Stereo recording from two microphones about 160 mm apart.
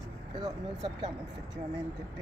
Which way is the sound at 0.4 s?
25° right (ahead or behind).